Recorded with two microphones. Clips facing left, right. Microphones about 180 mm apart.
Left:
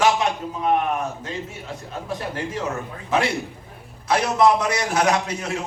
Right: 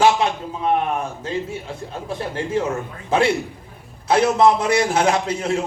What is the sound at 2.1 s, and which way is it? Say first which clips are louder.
Speech: right 3 dB; 30° right (ahead or behind).